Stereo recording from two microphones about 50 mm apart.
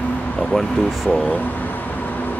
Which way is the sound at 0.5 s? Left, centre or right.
Centre.